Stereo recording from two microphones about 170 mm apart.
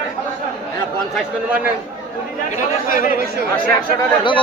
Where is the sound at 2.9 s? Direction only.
55° left (ahead or behind).